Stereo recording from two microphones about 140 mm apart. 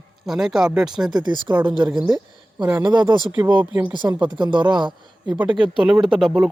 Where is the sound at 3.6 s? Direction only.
10° right (ahead or behind).